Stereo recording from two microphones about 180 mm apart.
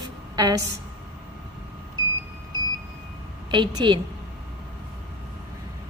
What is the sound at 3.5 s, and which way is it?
Speech, 25° right (ahead or behind).